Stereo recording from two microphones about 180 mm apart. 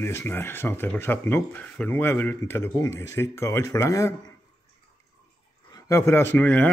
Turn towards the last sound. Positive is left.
turn(degrees=10)  # may be behind; listen again after turning